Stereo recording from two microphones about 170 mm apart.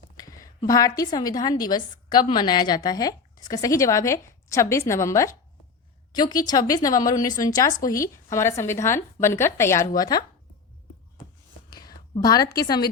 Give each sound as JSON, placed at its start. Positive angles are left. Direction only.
{"t": 0.2, "sound": "a woman's voice", "side_deg": 20}
{"t": 11.7, "sound": "a woman's voice", "side_deg": 25}